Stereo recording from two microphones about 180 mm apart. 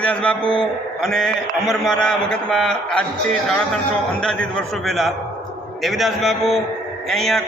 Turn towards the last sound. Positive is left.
turn(degrees=0)  # may be behind; listen again after turning